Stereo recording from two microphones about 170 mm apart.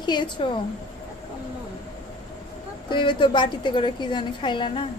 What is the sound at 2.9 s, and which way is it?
A woman's voice, 30° left (ahead or behind).